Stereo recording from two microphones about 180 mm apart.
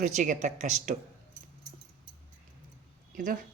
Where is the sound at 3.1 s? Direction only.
45° right (ahead or behind).